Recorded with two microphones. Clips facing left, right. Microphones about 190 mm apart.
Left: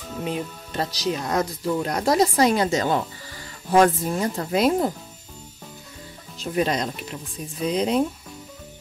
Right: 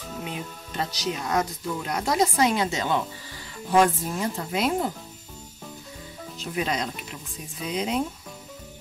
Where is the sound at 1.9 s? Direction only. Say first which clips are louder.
Left 3 dB; 40° left (ahead or behind).